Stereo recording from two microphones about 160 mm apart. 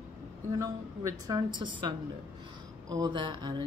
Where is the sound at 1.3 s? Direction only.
30° right (ahead or behind).